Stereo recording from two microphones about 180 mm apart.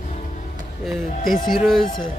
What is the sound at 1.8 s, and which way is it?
Speech, 25° left (ahead or behind).